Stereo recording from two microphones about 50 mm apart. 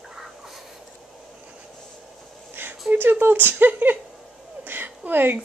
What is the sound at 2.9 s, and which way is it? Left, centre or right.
A woman's voice, right.